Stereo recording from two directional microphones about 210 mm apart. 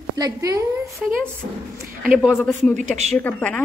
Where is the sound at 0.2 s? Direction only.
15° right (ahead or behind).